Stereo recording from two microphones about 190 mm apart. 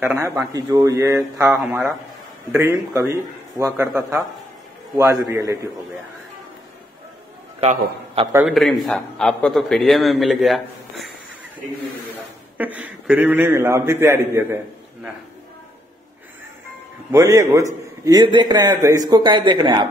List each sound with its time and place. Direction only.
0.0 s a man's voice: 15° right (ahead or behind)
1.4 s a man's voice: 5° right (ahead or behind)
7.6 s a man's voice: 30° right (ahead or behind)
8.5 s a man's voice: centre (ahead or behind)
12.5 s a man's voice: 10° right (ahead or behind)
17.1 s a man's voice: 15° right (ahead or behind)